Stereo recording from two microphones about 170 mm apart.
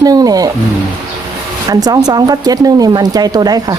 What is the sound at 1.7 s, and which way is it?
Speech, 20° right (ahead or behind).